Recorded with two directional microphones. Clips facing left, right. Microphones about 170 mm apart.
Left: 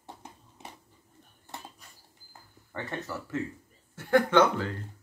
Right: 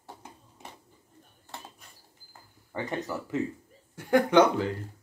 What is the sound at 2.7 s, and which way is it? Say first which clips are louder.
Speech: right 4 dB; 15° right (ahead or behind).